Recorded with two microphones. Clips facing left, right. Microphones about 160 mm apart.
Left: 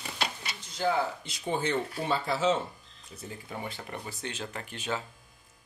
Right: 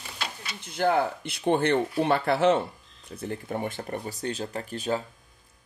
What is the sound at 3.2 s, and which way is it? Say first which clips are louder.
Speech: right 8 dB; 55° right (ahead or behind).